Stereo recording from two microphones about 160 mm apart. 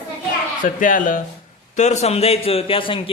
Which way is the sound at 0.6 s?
55° left (ahead or behind).